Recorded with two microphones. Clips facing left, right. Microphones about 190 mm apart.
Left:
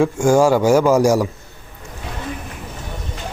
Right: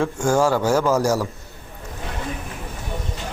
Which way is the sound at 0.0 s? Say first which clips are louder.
Left 5 dB; 10° left (ahead or behind).